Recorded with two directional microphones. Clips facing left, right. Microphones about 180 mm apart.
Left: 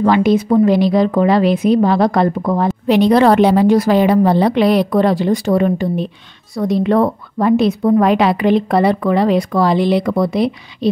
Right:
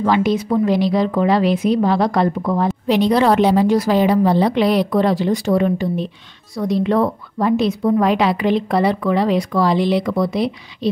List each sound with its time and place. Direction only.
0.0 s a woman's voice: 55° left (ahead or behind)